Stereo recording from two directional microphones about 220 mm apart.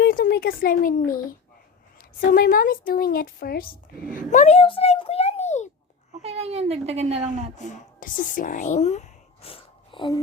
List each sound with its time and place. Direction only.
0.0 s a woman's voice: 45° left (ahead or behind)
6.2 s a child's voice: 25° right (ahead or behind)
7.6 s speech: 35° left (ahead or behind)